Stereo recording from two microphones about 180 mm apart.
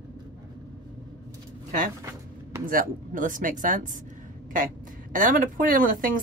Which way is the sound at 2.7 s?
50° right (ahead or behind).